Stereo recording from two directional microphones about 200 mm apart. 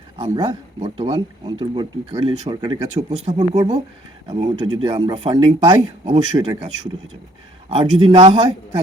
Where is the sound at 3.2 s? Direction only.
30° right (ahead or behind).